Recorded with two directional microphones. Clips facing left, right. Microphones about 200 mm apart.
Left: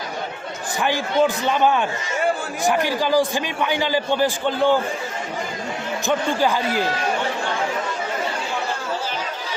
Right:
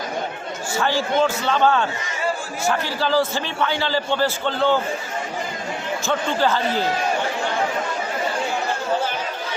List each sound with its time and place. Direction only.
0.8 s a man's voice: 15° left (ahead or behind)
6.1 s a man's voice: 10° left (ahead or behind)